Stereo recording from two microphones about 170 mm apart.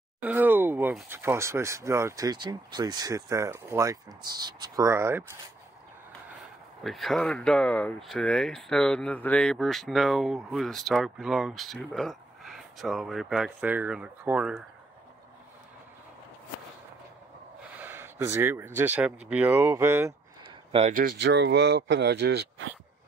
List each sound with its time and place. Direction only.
0.2 s speech: 10° right (ahead or behind)
6.8 s speech: centre (ahead or behind)
17.7 s speech: 15° right (ahead or behind)
20.4 s a sound: 40° right (ahead or behind)
21.2 s speech: 90° right